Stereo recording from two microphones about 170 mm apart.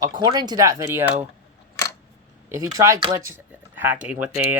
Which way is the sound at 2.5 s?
15° right (ahead or behind).